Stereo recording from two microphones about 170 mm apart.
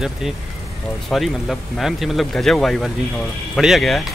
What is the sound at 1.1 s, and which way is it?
Speech, centre (ahead or behind).